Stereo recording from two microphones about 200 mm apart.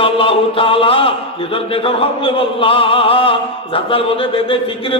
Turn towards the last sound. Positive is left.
turn(degrees=25)  # may be behind; listen again after turning